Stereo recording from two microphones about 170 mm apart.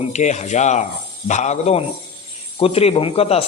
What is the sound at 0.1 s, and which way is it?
A man's voice, 45° left (ahead or behind).